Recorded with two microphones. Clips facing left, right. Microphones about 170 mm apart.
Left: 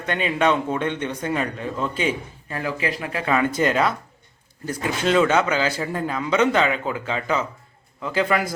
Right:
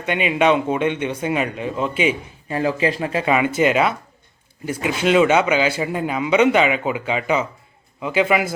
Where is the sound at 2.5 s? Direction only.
25° right (ahead or behind).